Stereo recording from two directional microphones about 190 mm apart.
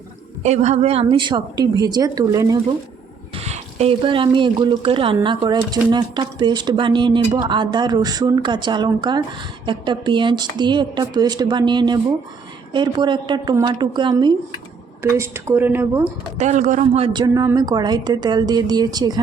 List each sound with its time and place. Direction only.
0.4 s speech: 35° right (ahead or behind); by 2.6 s 20° right (ahead or behind)
3.3 s speech: 35° right (ahead or behind); by 16.0 s 15° right (ahead or behind)
16.4 s a man's voice: 40° right (ahead or behind)
17.2 s speech: 20° right (ahead or behind)